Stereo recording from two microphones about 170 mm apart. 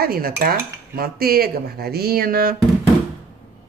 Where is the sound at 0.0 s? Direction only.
60° right (ahead or behind).